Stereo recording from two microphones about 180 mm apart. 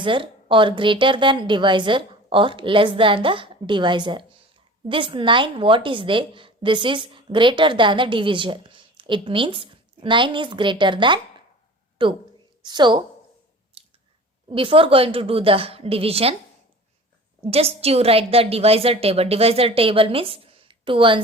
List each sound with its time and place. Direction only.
0.0 s a woman's voice: 30° right (ahead or behind)
13.8 s a sound: 30° right (ahead or behind)
14.5 s a woman's voice: 30° right (ahead or behind)
17.4 s a woman's voice: 35° right (ahead or behind)